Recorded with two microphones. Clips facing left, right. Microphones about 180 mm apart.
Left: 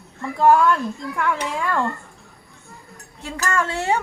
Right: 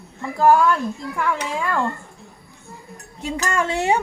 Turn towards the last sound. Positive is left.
turn(degrees=-15)  # may be behind; listen again after turning